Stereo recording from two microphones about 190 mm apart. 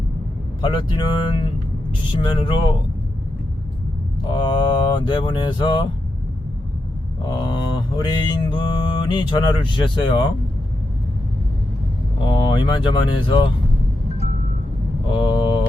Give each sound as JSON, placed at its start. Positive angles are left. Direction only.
{"t": 0.6, "sound": "mantra", "side_deg": 25}
{"t": 4.2, "sound": "mantra", "side_deg": 25}
{"t": 7.3, "sound": "mantra", "side_deg": 25}
{"t": 12.2, "sound": "speech", "side_deg": 25}
{"t": 15.1, "sound": "mantra", "side_deg": 25}